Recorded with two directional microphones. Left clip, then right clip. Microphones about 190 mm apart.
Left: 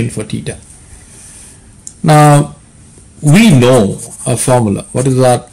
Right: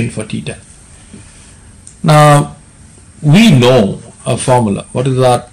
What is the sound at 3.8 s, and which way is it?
Speech, 25° left (ahead or behind).